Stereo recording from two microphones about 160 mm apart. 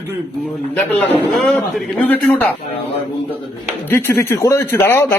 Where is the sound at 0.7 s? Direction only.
10° left (ahead or behind).